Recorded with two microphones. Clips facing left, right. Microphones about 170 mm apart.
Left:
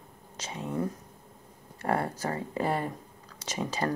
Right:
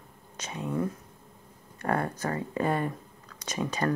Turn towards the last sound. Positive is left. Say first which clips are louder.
# right 2 dB
turn(degrees=25)  # may be behind; listen again after turning